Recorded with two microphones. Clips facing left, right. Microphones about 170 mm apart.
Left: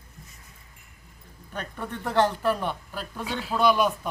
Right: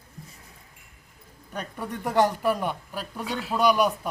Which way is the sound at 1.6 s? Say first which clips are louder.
Right 1 dB; 10° right (ahead or behind).